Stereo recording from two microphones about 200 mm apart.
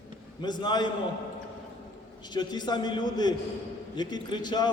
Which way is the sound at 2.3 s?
20° left (ahead or behind).